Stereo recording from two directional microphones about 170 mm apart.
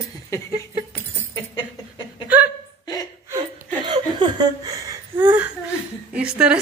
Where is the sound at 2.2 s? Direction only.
10° right (ahead or behind).